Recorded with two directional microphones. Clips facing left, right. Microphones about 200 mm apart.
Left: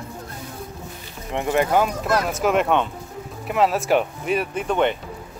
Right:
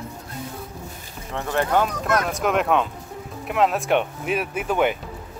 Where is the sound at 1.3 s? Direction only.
15° left (ahead or behind); by 4.9 s 5° right (ahead or behind).